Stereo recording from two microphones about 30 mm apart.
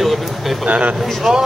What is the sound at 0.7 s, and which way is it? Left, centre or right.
Speech, right.